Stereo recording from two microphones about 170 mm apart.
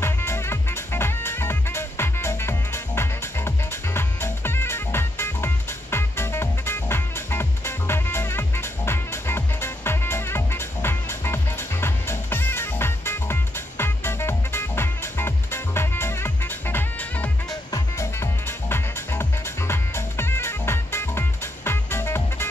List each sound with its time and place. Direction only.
0.0 s music: 15° left (ahead or behind)